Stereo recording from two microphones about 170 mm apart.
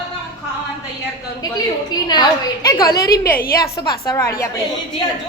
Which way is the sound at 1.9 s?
25° left (ahead or behind).